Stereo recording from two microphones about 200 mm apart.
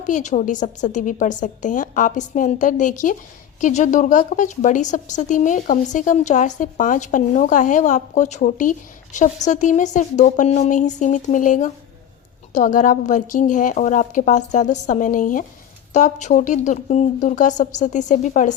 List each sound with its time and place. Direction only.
0.0 s a woman's voice: 40° left (ahead or behind)